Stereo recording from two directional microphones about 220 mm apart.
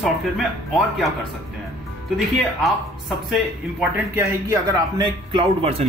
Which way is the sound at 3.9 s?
10° right (ahead or behind).